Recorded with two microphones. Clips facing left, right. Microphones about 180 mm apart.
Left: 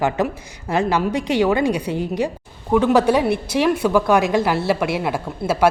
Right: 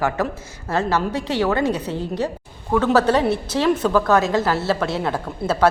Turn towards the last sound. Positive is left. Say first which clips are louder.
# left 1 dB
turn(degrees=10)  # may be behind; listen again after turning